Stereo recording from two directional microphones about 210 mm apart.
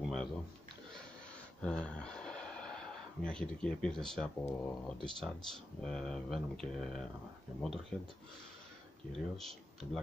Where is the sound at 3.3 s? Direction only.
5° left (ahead or behind).